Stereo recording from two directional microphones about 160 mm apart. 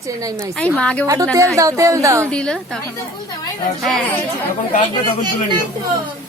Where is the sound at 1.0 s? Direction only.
20° right (ahead or behind).